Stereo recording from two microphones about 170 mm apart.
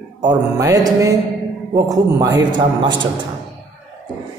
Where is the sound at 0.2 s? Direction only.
20° right (ahead or behind).